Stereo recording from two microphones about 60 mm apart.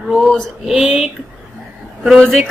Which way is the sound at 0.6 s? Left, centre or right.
Centre.